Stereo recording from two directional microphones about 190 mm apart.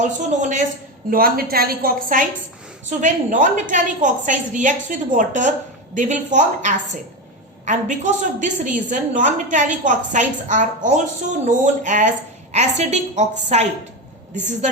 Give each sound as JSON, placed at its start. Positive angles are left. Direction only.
{"t": 0.0, "sound": "a woman's voice", "side_deg": -40}
{"t": 1.1, "sound": "a woman's voice", "side_deg": -50}